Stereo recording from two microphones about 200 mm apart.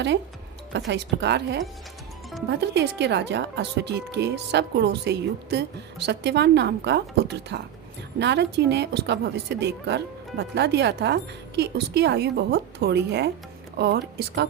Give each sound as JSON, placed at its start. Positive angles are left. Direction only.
{"t": 0.9, "sound": "speech", "side_deg": -60}